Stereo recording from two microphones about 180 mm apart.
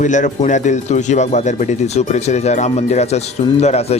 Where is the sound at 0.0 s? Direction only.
45° left (ahead or behind).